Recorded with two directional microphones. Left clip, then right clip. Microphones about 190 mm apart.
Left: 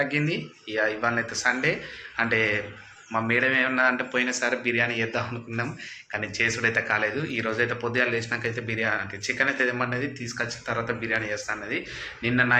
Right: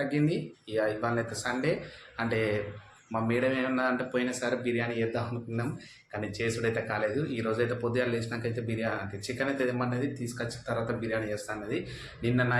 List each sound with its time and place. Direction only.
0.0 s speech: 5° right (ahead or behind)